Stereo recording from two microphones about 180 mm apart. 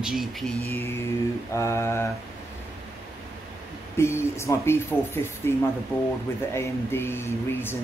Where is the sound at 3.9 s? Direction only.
15° left (ahead or behind).